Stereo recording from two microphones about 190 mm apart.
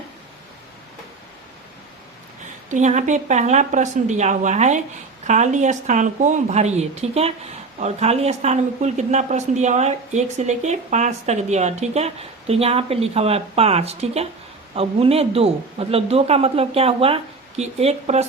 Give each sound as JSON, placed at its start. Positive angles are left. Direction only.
{"t": 2.6, "sound": "speech", "side_deg": -40}